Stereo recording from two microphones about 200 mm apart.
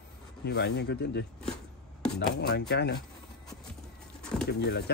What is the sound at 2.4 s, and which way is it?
Speech, 55° left (ahead or behind).